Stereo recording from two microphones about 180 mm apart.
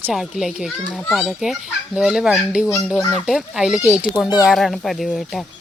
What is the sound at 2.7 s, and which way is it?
Speech, 15° left (ahead or behind).